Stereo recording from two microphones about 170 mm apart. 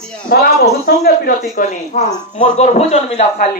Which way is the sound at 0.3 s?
70° left (ahead or behind).